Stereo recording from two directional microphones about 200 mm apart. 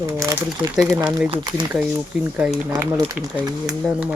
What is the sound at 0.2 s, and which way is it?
Speech, 15° right (ahead or behind).